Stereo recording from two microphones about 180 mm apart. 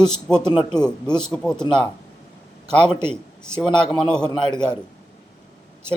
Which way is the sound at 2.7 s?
25° left (ahead or behind).